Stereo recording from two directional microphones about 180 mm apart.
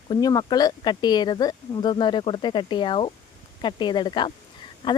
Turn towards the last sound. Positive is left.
turn(degrees=25)  # may be behind; listen again after turning